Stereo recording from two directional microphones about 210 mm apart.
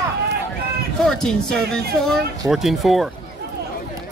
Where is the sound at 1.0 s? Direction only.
5° left (ahead or behind).